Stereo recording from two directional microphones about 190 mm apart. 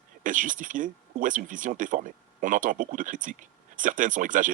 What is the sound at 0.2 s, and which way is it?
Speech, 45° right (ahead or behind).